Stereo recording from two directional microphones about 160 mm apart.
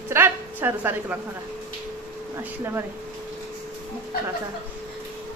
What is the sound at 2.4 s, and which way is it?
Speech, 15° right (ahead or behind).